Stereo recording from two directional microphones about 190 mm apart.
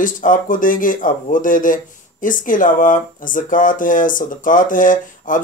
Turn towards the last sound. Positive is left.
turn(degrees=45)  # may be behind; listen again after turning